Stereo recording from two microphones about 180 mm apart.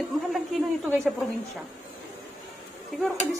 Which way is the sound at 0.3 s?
Centre (ahead or behind).